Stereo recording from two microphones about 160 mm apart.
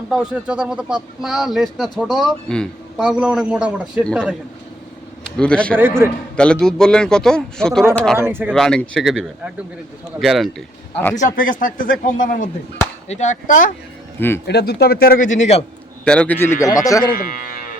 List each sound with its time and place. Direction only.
0.1 s a man's voice: 5° right (ahead or behind)
4.0 s a man's voice: 5° left (ahead or behind)
5.4 s speech: 5° left (ahead or behind)
6.0 s speech: 15° right (ahead or behind)
6.3 s a man's voice: 5° left (ahead or behind)
8.2 s speech: 15° right (ahead or behind)
8.5 s a man's voice: 5° left (ahead or behind)
11.2 s speech: 60° left (ahead or behind)
14.2 s speech: 15° left (ahead or behind)
14.4 s speech: 85° left
15.3 s speech: 45° left (ahead or behind)
16.0 s speech: 10° left (ahead or behind)
17.1 s speech: 60° left (ahead or behind)